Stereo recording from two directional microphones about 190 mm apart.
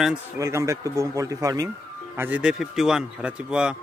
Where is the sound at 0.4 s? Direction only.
15° right (ahead or behind).